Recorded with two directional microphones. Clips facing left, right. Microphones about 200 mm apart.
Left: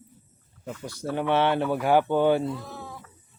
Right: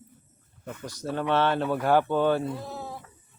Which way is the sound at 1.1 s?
15° left (ahead or behind).